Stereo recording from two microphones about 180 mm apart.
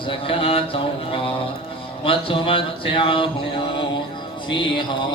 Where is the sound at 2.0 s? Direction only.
30° left (ahead or behind).